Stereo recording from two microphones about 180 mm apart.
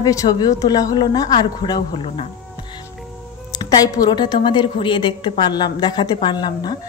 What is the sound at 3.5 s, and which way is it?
Speech, 20° left (ahead or behind).